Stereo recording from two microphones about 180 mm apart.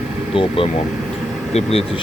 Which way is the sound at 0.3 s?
30° left (ahead or behind).